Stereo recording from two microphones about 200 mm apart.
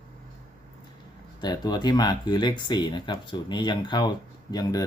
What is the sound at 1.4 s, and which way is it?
Speech, 20° left (ahead or behind).